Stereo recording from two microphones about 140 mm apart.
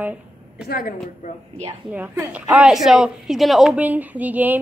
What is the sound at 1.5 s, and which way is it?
Speech, 40° right (ahead or behind).